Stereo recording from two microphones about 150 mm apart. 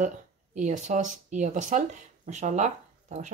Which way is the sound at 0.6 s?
50° right (ahead or behind).